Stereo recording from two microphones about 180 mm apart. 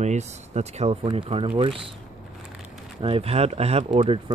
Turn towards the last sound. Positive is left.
turn(degrees=-35)  # may be behind; listen again after turning